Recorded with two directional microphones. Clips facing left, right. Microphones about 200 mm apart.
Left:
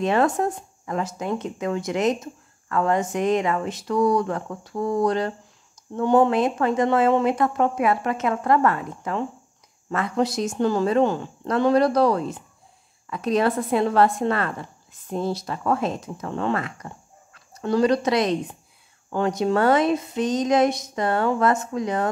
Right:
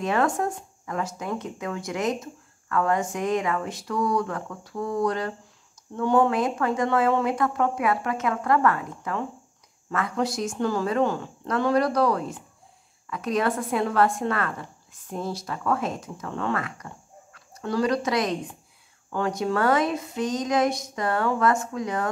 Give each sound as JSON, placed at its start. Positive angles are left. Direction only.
{"t": 0.0, "sound": "speech", "side_deg": 25}